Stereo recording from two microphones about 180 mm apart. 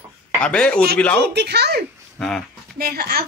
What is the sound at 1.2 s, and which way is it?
Speech, 70° right (ahead or behind).